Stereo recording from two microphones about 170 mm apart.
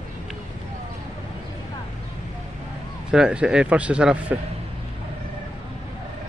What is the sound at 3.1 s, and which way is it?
Speech, 5° right (ahead or behind).